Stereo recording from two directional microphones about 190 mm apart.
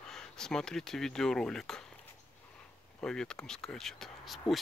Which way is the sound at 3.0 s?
5° left (ahead or behind).